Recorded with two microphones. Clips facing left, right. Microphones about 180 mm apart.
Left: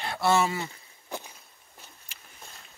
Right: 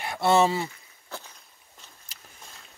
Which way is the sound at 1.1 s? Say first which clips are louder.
Left 3 dB; 15° left (ahead or behind).